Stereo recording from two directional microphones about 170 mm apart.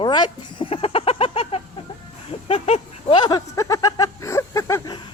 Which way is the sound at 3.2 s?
20° left (ahead or behind).